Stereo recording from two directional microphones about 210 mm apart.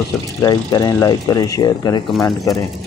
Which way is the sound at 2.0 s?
Centre (ahead or behind).